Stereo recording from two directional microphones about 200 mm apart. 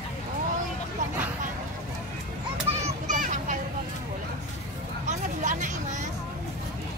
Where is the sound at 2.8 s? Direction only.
40° right (ahead or behind).